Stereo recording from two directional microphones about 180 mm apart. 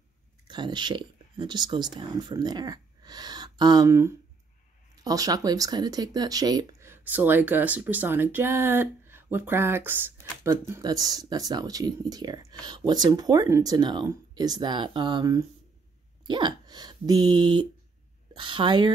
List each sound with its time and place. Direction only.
0.5 s speech: 25° right (ahead or behind)